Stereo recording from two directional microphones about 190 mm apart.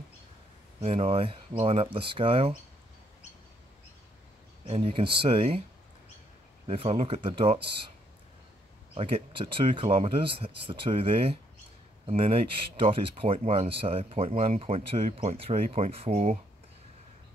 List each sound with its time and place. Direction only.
0.7 s speech: 30° right (ahead or behind)
4.6 s speech: 30° right (ahead or behind)
6.7 s speech: 35° right (ahead or behind)
8.9 s speech: 30° right (ahead or behind)